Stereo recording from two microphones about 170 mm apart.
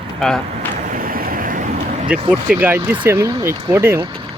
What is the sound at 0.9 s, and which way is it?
Vehicle, 55° right (ahead or behind).